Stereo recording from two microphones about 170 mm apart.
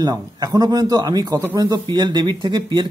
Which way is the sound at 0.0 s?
20° right (ahead or behind).